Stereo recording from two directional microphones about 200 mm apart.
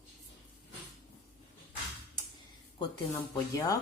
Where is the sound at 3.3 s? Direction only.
15° left (ahead or behind).